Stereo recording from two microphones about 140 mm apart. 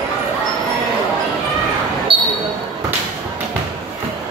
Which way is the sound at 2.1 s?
40° right (ahead or behind).